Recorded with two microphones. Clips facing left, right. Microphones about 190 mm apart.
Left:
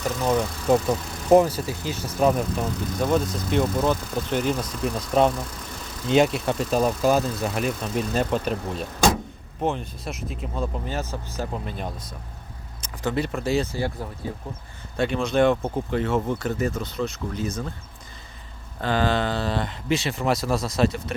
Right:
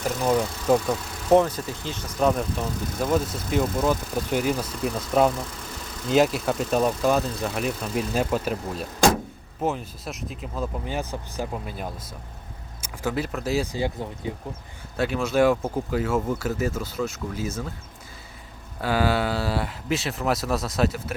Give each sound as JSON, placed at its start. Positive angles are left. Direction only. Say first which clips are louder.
{"t": 0.2, "sound": "speech", "louder": "even", "side_deg": -5}
{"t": 0.7, "sound": "speech", "louder": "left 1 dB", "side_deg": 5}
{"t": 10.8, "sound": "speech", "louder": "even", "side_deg": -15}
{"t": 13.7, "sound": "speech", "louder": "right 1 dB", "side_deg": -15}
{"t": 14.9, "sound": "speech", "louder": "left 1 dB", "side_deg": -5}
{"t": 18.8, "sound": "speech", "louder": "even", "side_deg": -10}